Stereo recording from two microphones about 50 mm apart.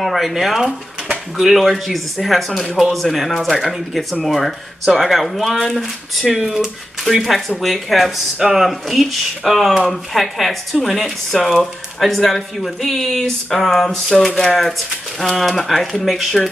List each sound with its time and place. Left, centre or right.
0.0 s speech: centre